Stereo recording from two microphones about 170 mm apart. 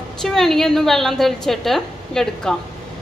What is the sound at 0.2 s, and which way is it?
A woman's voice, 5° left (ahead or behind).